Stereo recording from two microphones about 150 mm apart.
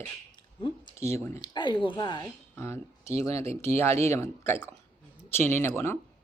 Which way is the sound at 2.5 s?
20° left (ahead or behind).